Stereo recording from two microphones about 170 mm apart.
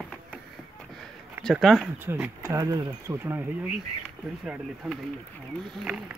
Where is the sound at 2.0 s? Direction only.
10° right (ahead or behind).